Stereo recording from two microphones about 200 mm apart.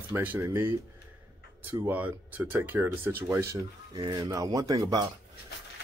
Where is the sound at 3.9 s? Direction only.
20° right (ahead or behind).